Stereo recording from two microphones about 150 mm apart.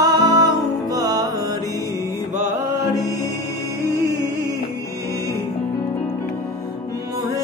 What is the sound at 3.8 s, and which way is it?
Music, 20° left (ahead or behind).